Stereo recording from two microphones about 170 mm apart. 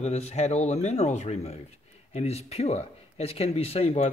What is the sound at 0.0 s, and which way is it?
Speech, 40° left (ahead or behind).